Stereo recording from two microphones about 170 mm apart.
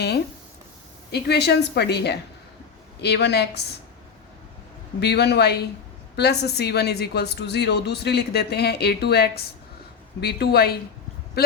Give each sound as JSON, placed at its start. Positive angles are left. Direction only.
{"t": 1.1, "sound": "a woman's voice", "side_deg": 75}
{"t": 4.9, "sound": "a woman's voice", "side_deg": 75}